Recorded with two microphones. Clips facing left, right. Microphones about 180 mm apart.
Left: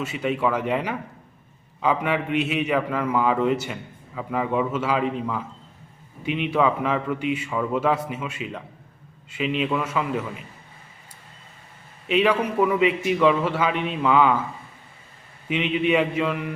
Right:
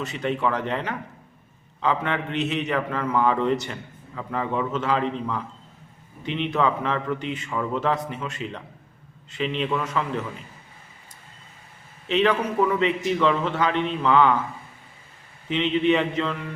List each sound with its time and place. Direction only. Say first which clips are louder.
0.0 s a man's voice: left 1 dB; 5° left (ahead or behind)
12.0 s a man's voice: left 1 dB; 10° left (ahead or behind)
15.4 s a man's voice: right 1 dB; 10° left (ahead or behind)